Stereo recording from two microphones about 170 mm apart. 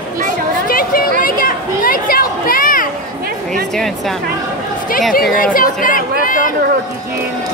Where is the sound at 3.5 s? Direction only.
Centre (ahead or behind).